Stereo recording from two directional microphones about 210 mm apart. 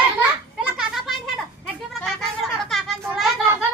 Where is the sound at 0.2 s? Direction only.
5° right (ahead or behind).